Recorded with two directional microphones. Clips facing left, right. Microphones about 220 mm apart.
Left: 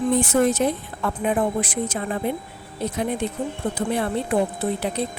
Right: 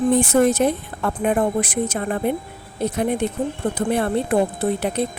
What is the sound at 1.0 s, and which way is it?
Speech, 50° right (ahead or behind).